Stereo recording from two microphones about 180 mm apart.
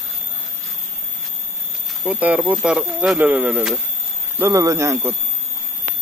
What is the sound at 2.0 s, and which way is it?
Speech, 10° right (ahead or behind).